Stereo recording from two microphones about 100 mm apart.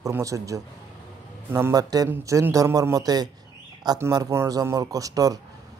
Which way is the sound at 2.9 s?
40° right (ahead or behind).